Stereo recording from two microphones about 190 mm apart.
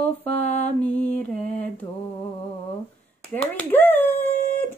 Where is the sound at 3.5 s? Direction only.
10° left (ahead or behind).